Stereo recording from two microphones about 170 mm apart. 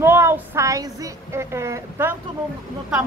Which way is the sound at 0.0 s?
15° right (ahead or behind).